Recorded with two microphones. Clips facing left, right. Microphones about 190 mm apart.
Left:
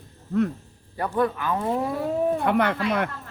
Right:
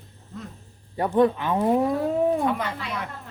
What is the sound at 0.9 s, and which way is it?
Speech, 25° right (ahead or behind).